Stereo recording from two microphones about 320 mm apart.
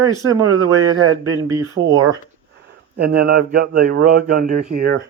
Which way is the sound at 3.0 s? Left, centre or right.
Right.